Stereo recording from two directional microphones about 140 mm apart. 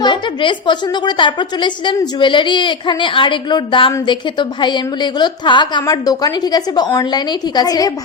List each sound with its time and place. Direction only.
0.0 s a woman's voice: 35° left (ahead or behind)